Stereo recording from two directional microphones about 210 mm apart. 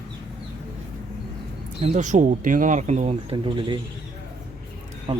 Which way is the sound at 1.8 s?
35° right (ahead or behind).